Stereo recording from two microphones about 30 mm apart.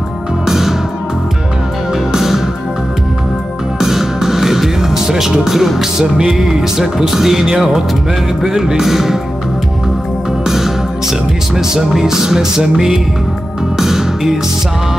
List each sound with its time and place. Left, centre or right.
0.5 s music: centre
2.1 s music: centre
3.8 s music: centre
10.4 s music: centre